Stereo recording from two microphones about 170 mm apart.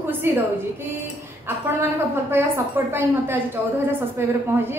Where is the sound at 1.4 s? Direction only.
15° right (ahead or behind).